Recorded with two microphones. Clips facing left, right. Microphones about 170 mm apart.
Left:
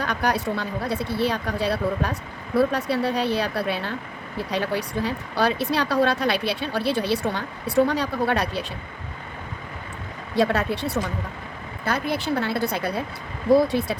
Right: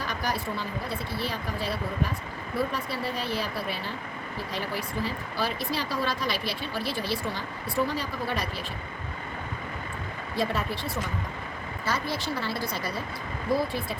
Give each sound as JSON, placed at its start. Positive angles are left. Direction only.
{"t": 0.0, "sound": "speech", "side_deg": 65}
{"t": 10.3, "sound": "speech", "side_deg": 75}
{"t": 11.9, "sound": "speech", "side_deg": 60}